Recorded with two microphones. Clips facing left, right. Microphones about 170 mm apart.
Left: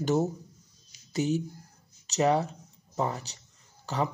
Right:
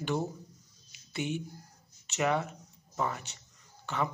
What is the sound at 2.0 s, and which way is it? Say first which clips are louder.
Speech: left 5 dB; 35° left (ahead or behind).